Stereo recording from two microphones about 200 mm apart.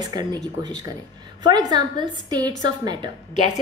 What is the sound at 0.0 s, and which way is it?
A woman's voice, 20° right (ahead or behind).